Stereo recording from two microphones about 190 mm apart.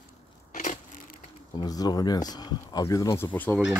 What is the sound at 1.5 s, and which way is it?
Speech, 20° left (ahead or behind).